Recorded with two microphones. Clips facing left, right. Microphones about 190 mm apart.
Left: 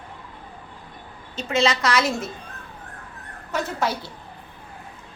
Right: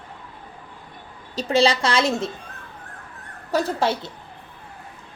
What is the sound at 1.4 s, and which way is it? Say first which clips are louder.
Speech: right 3 dB; 35° right (ahead or behind).